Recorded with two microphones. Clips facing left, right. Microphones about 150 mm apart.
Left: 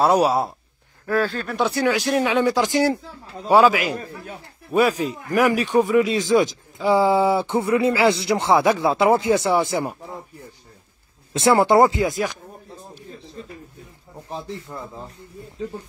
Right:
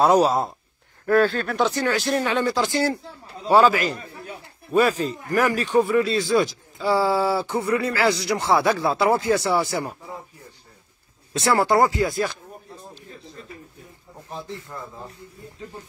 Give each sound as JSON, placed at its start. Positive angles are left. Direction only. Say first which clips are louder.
{"t": 0.0, "sound": "speech", "louder": "even", "side_deg": 10}
{"t": 11.3, "sound": "speech", "louder": "left 4 dB", "side_deg": 20}